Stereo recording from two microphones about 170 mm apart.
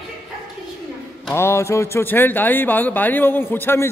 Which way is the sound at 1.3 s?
15° left (ahead or behind).